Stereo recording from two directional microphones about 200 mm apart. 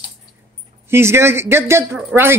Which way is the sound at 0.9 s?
15° right (ahead or behind).